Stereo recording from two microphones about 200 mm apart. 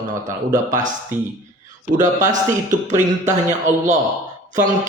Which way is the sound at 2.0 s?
40° right (ahead or behind).